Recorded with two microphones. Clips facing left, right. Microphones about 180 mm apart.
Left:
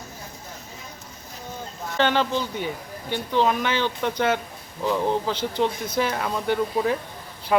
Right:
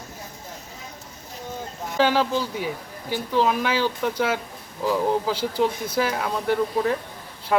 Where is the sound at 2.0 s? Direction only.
5° right (ahead or behind).